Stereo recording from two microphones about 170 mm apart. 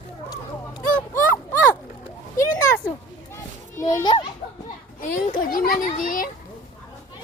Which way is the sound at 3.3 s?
20° left (ahead or behind).